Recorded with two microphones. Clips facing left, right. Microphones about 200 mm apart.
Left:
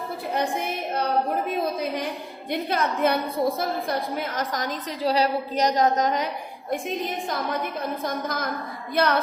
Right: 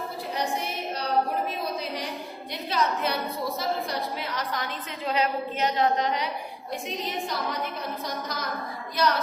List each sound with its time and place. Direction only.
0.9 s a sound: 50° left (ahead or behind)
2.5 s a woman's voice: 55° left (ahead or behind)
9.0 s female singing: 55° left (ahead or behind)